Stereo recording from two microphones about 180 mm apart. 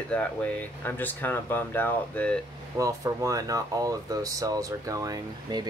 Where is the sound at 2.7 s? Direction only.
20° right (ahead or behind).